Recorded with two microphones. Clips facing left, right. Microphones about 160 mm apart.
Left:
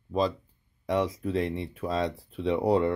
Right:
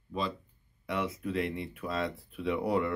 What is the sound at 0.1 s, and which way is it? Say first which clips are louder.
Speech: left 8 dB; 40° left (ahead or behind).